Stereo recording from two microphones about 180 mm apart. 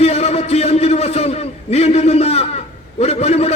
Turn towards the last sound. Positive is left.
turn(degrees=35)  # may be behind; listen again after turning